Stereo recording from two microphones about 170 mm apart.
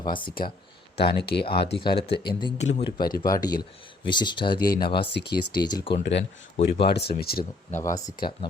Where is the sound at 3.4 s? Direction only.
25° left (ahead or behind).